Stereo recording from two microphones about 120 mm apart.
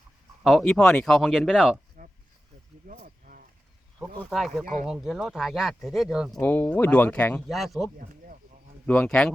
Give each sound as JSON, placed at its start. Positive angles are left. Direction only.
{"t": 0.4, "sound": "speech", "side_deg": 0}
{"t": 4.3, "sound": "speech", "side_deg": 0}
{"t": 6.4, "sound": "speech", "side_deg": 15}
{"t": 7.4, "sound": "speech", "side_deg": 0}
{"t": 8.9, "sound": "speech", "side_deg": 5}